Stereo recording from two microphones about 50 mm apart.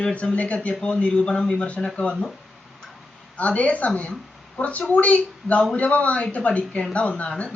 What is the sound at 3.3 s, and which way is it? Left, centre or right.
Speech, left.